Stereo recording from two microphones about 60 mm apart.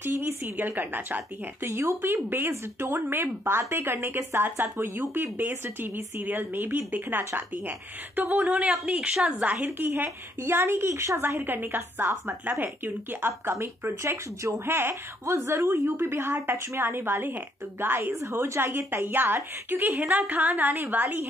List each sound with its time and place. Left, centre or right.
0.0 s a woman's voice: right
1.7 s a woman's voice: right
10.6 s a woman's voice: right